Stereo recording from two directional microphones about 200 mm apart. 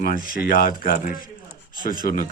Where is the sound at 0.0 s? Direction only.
45° left (ahead or behind).